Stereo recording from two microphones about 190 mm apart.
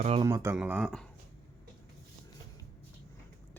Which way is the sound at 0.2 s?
15° right (ahead or behind).